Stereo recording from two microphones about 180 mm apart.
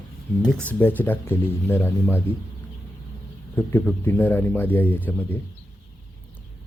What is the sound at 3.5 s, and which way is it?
Speech, 10° left (ahead or behind).